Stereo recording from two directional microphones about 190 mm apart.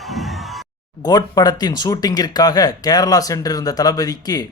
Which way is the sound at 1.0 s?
20° left (ahead or behind).